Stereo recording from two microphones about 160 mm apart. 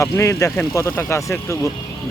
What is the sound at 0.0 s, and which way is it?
Speech, 20° left (ahead or behind).